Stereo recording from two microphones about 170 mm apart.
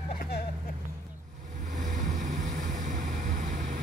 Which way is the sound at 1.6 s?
45° right (ahead or behind).